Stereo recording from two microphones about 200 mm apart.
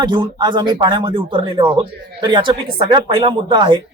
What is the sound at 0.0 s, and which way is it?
A man's voice, 20° right (ahead or behind).